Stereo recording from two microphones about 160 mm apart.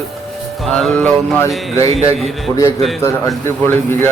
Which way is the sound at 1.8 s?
40° right (ahead or behind).